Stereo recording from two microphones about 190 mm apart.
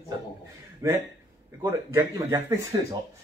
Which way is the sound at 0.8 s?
15° right (ahead or behind).